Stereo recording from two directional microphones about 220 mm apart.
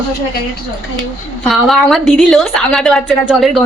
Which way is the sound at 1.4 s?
Centre (ahead or behind).